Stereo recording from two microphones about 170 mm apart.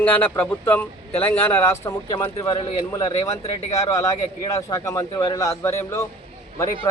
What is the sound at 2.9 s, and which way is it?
A man's voice, 20° left (ahead or behind).